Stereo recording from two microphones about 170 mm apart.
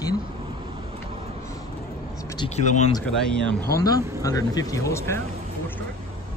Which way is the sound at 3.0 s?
5° left (ahead or behind).